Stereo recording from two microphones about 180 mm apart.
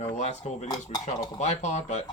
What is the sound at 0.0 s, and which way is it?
Speech, 40° left (ahead or behind).